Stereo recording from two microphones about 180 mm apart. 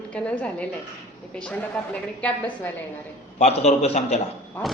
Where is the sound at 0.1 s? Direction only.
5° left (ahead or behind).